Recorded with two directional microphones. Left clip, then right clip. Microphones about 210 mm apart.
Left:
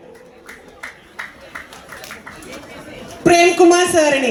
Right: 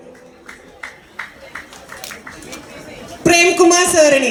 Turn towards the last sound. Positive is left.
turn(degrees=-55)  # may be behind; listen again after turning